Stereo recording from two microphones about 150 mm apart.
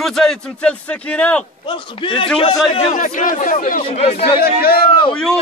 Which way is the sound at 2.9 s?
60° left (ahead or behind).